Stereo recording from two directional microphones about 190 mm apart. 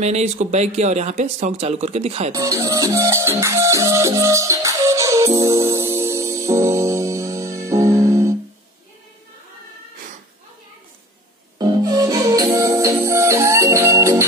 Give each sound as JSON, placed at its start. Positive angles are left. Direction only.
{"t": 0.0, "sound": "speech", "side_deg": -35}
{"t": 2.3, "sound": "music", "side_deg": -20}
{"t": 11.5, "sound": "music", "side_deg": -20}